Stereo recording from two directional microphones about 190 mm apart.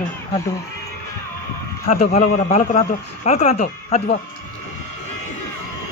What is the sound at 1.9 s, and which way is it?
Speech, 35° left (ahead or behind).